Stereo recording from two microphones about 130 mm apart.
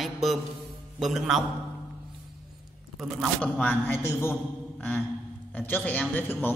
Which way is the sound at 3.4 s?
10° left (ahead or behind).